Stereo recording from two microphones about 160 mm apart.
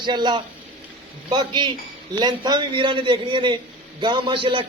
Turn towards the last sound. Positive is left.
turn(degrees=-30)  # may be behind; listen again after turning